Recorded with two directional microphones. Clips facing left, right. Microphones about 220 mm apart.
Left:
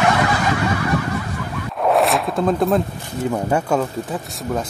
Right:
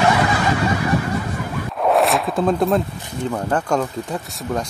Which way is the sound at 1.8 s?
Centre (ahead or behind).